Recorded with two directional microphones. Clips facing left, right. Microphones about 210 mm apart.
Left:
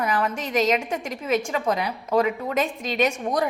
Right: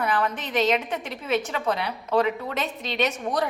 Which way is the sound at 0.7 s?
10° left (ahead or behind).